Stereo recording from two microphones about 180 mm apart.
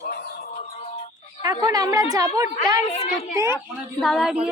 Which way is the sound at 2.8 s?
35° left (ahead or behind).